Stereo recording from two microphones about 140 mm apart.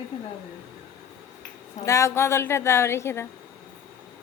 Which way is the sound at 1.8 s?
20° left (ahead or behind).